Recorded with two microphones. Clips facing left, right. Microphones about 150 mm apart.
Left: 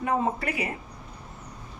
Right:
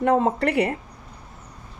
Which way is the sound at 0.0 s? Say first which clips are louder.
Right 7 dB; 70° right (ahead or behind).